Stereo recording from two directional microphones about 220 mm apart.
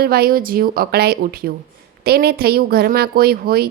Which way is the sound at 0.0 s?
45° right (ahead or behind).